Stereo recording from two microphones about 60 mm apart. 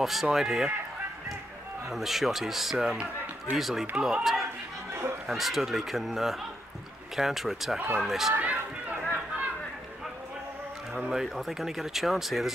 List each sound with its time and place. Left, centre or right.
0.0 s speech: centre
1.9 s speech: centre
8.4 s run: right
11.1 s speech: centre